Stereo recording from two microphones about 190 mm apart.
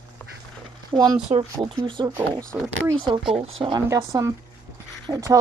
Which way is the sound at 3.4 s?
25° right (ahead or behind).